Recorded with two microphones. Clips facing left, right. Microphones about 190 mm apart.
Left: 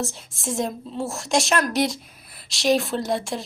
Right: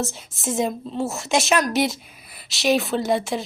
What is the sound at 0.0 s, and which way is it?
A woman's voice, centre (ahead or behind).